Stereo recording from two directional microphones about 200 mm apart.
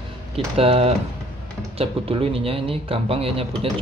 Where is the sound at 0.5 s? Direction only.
30° right (ahead or behind).